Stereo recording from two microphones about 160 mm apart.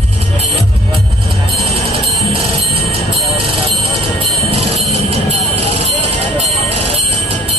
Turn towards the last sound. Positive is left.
turn(degrees=-40)  # may be behind; listen again after turning